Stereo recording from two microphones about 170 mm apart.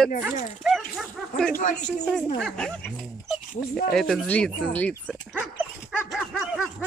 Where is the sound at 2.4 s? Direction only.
5° left (ahead or behind).